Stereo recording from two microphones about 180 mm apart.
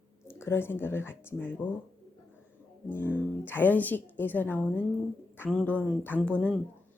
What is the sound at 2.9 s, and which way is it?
A woman's voice, 10° left (ahead or behind).